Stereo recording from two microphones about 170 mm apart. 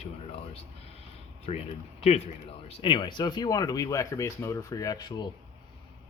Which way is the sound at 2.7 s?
30° left (ahead or behind).